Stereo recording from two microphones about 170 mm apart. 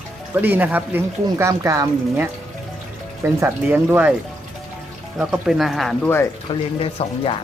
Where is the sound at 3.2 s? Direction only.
15° right (ahead or behind).